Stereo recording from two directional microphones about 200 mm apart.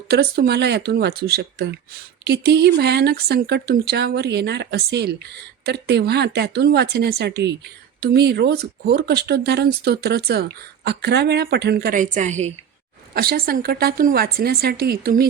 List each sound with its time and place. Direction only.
0.1 s speech: 55° right (ahead or behind); by 12.5 s 35° right (ahead or behind)
13.1 s speech: 50° right (ahead or behind)